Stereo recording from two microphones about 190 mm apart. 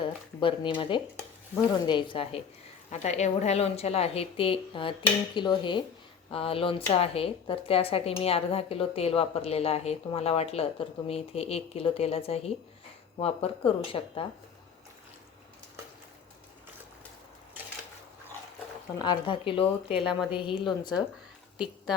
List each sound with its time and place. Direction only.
0.3 s speech: 25° left (ahead or behind)
19.0 s speech: 25° left (ahead or behind)